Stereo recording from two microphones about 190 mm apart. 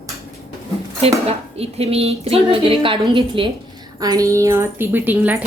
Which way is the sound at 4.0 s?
20° right (ahead or behind).